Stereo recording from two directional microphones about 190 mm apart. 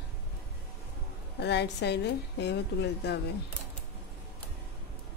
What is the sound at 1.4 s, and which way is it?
A woman's voice, 60° left (ahead or behind).